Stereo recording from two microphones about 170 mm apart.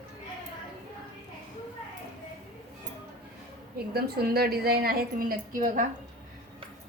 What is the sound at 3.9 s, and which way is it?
A woman's voice, 65° right (ahead or behind).